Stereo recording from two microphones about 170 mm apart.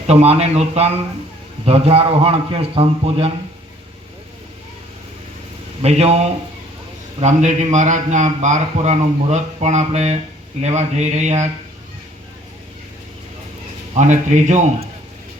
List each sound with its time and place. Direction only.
0.1 s a man's voice: 40° right (ahead or behind)
5.8 s a man's voice: 40° right (ahead or behind)
13.9 s a man's voice: 45° right (ahead or behind)